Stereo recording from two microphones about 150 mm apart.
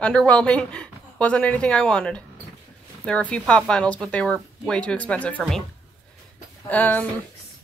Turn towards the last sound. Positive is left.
turn(degrees=10)  # may be behind; listen again after turning